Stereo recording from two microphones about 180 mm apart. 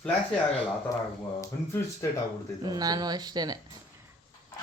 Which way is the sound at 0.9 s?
20° left (ahead or behind).